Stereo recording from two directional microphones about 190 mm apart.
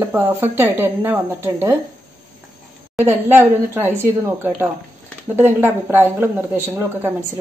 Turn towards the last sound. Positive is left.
turn(degrees=-10)  # may be behind; listen again after turning